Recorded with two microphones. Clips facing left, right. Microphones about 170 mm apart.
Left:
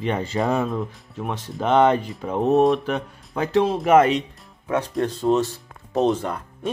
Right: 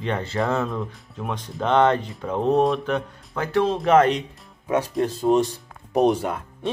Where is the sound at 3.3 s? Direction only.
20° left (ahead or behind).